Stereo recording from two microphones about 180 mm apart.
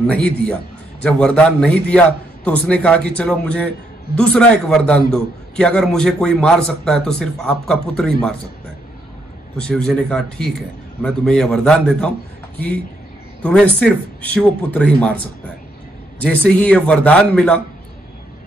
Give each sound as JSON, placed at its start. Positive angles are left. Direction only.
{"t": 0.0, "sound": "a man's voice", "side_deg": 5}
{"t": 9.6, "sound": "a man's voice", "side_deg": 5}
{"t": 13.4, "sound": "a man's voice", "side_deg": 5}
{"t": 16.2, "sound": "a man's voice", "side_deg": 5}